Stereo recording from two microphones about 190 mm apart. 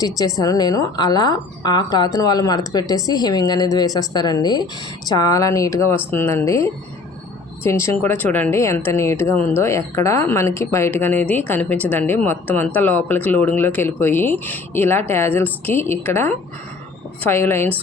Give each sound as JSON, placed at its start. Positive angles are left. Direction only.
{"t": 0.3, "sound": "a woman's voice", "side_deg": 20}